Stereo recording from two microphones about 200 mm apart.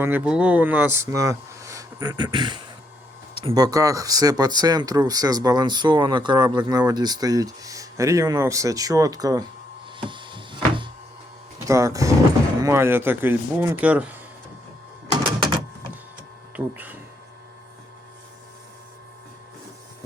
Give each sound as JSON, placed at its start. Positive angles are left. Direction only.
{"t": 0.0, "sound": "speech", "side_deg": -5}
{"t": 10.0, "sound": "a sound", "side_deg": -25}
{"t": 11.6, "sound": "speech", "side_deg": -15}
{"t": 16.6, "sound": "speech", "side_deg": -10}